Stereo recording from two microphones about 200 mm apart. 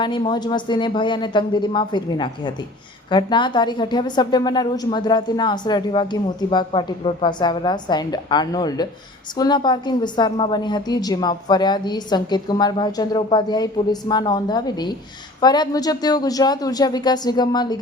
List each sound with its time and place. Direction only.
0.0 s a woman's voice: 25° left (ahead or behind)